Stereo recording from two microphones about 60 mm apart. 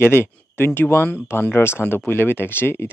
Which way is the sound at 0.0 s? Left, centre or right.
Left.